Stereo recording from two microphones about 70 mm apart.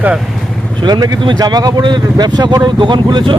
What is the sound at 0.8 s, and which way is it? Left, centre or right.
A man's voice, right.